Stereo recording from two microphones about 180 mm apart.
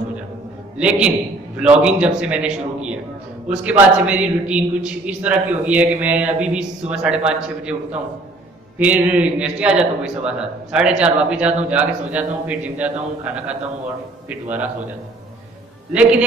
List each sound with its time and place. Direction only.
0.7 s a man's voice: 5° right (ahead or behind)
15.9 s a man's voice: 5° right (ahead or behind)